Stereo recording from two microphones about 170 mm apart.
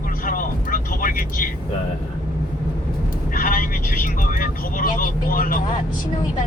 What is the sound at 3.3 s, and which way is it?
Vehicle, 55° left (ahead or behind).